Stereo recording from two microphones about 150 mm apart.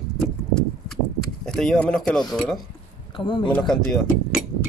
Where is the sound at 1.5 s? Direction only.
5° left (ahead or behind).